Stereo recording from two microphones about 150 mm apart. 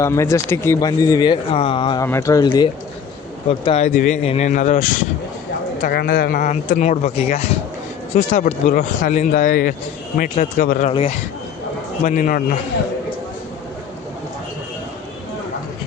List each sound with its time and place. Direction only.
0.0 s speech: 20° left (ahead or behind)
2.0 s speech: 20° left (ahead or behind)
3.6 s speech: 40° left (ahead or behind)
3.8 s speech: 55° left (ahead or behind)
5.8 s a man's voice: 85° left
6.4 s speech: 55° left (ahead or behind); by 9.7 s 70° left (ahead or behind)
10.3 s speech: 55° left (ahead or behind)
12.0 s speech: 55° left (ahead or behind)